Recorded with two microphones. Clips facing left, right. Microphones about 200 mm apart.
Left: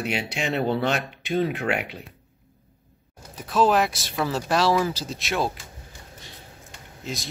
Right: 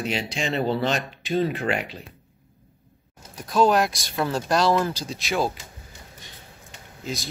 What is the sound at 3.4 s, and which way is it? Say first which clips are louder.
Speech: right 1 dB; centre (ahead or behind).